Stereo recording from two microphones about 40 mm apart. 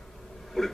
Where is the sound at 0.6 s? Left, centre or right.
Centre.